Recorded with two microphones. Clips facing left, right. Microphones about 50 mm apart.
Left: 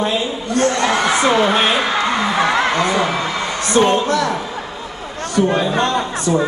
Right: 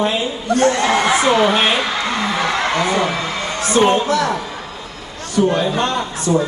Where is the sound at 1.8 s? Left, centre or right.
Centre.